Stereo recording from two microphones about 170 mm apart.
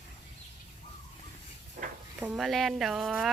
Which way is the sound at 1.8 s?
55° right (ahead or behind).